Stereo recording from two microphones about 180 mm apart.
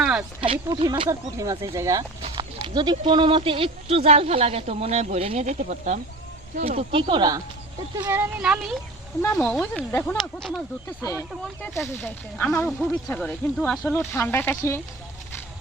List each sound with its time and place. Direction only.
0.0 s a sound: 5° right (ahead or behind)
0.4 s speech: 30° right (ahead or behind)
7.9 s speech: 10° right (ahead or behind)
9.4 s speech: 5° left (ahead or behind)
11.9 s speech: 10° left (ahead or behind)